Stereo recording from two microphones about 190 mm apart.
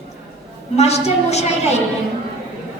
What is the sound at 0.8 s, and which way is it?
Speech, 35° left (ahead or behind).